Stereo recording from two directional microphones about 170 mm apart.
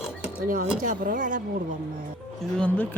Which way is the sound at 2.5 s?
5° left (ahead or behind).